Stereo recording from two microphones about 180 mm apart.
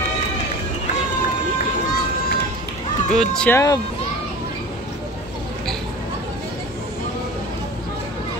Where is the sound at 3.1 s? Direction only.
5° left (ahead or behind).